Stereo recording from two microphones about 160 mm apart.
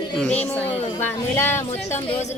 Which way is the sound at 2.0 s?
45° left (ahead or behind).